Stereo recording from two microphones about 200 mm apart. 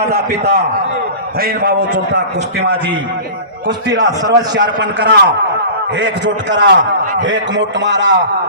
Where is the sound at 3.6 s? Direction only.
60° right (ahead or behind).